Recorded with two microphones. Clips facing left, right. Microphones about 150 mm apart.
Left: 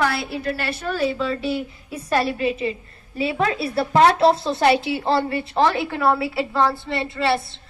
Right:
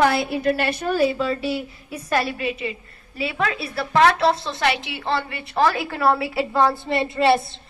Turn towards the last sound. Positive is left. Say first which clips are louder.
# right 4 dB
turn(degrees=-20)  # may be behind; listen again after turning